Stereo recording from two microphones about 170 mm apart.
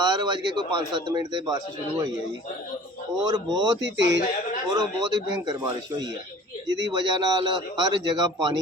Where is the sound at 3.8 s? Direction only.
90° right.